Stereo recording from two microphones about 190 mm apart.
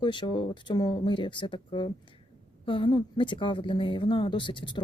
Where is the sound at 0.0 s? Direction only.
25° left (ahead or behind).